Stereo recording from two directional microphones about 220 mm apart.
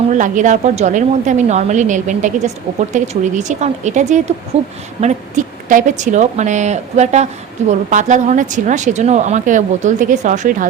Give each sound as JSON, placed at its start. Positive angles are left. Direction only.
{"t": 0.1, "sound": "speech", "side_deg": -35}